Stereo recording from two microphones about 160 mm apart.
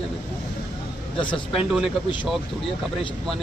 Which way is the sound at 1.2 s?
5° left (ahead or behind).